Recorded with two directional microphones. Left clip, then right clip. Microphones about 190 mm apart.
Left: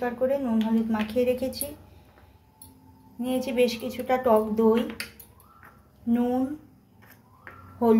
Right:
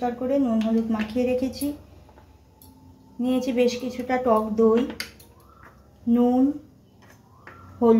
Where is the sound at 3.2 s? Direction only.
50° left (ahead or behind).